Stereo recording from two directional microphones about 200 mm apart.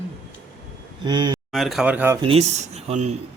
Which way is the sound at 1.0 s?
20° right (ahead or behind).